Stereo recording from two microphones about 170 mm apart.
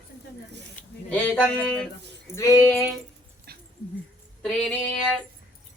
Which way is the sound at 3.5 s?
60° right (ahead or behind).